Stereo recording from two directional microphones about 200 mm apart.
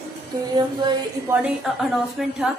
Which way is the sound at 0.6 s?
20° right (ahead or behind).